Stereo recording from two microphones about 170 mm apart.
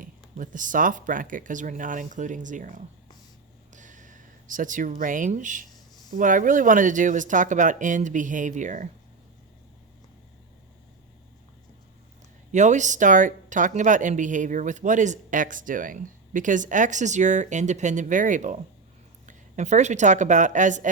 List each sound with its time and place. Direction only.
0.0 s speech: 50° right (ahead or behind)
3.7 s a sound: 45° right (ahead or behind)
6.1 s speech: 50° right (ahead or behind)
12.5 s a woman's voice: 45° right (ahead or behind)